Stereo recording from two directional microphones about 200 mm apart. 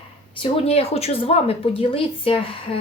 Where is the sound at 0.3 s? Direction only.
30° left (ahead or behind).